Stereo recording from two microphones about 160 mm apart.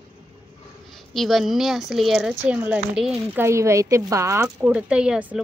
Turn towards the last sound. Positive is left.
turn(degrees=-5)  # may be behind; listen again after turning